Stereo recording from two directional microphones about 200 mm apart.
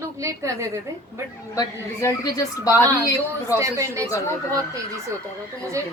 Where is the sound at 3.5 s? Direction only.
15° right (ahead or behind).